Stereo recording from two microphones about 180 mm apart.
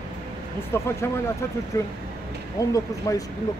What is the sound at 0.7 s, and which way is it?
Speech, 15° left (ahead or behind).